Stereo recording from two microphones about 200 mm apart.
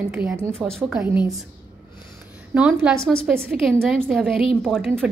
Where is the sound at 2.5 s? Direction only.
10° right (ahead or behind).